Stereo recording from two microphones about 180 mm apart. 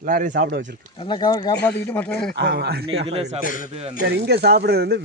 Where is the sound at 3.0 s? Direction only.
35° right (ahead or behind).